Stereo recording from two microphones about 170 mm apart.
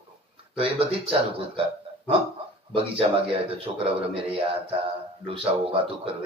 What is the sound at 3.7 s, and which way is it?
A man's voice, 30° right (ahead or behind).